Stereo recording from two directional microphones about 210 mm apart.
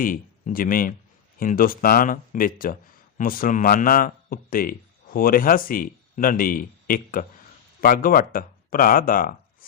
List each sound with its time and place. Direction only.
0.0 s speech: 40° left (ahead or behind)